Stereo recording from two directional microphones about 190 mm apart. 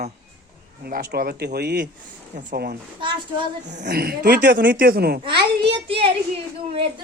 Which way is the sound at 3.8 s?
55° right (ahead or behind).